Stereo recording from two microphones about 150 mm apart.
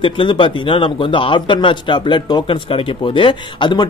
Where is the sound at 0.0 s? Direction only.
35° left (ahead or behind).